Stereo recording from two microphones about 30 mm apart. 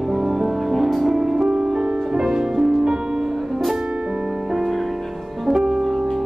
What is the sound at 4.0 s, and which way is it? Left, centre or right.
Music, right.